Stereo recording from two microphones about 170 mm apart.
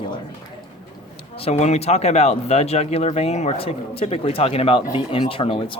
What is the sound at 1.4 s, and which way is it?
Speech, 40° left (ahead or behind).